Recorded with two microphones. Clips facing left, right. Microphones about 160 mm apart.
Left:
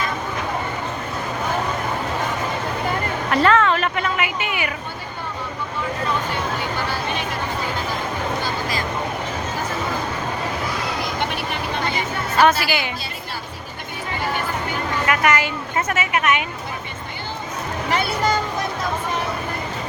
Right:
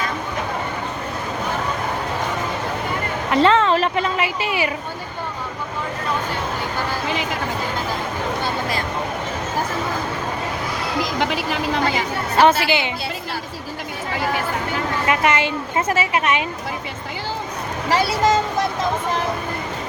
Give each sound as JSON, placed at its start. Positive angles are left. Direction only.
{"t": 3.2, "sound": "a sound", "side_deg": -25}
{"t": 11.2, "sound": "speech", "side_deg": -90}
{"t": 12.4, "sound": "speech", "side_deg": -25}
{"t": 15.0, "sound": "speech", "side_deg": -25}
{"t": 17.8, "sound": "speech", "side_deg": -35}